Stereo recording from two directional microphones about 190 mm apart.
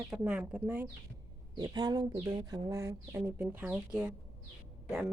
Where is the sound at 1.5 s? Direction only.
20° right (ahead or behind); by 4.1 s 5° right (ahead or behind).